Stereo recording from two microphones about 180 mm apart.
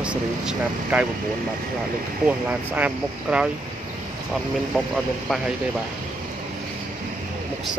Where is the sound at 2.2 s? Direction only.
10° right (ahead or behind).